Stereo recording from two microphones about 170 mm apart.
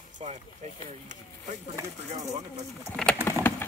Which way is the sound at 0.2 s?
40° right (ahead or behind).